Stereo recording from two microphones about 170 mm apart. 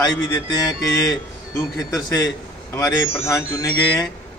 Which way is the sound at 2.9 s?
15° left (ahead or behind).